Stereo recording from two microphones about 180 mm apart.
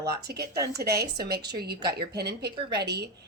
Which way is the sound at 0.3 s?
60° right (ahead or behind).